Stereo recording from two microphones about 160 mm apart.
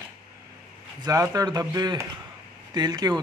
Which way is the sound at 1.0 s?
20° right (ahead or behind).